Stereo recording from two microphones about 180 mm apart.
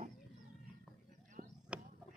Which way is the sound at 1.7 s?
5° right (ahead or behind).